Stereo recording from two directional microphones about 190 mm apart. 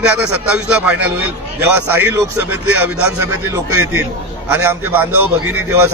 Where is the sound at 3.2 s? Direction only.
15° right (ahead or behind).